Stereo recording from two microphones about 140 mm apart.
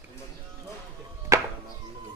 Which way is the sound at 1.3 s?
20° right (ahead or behind).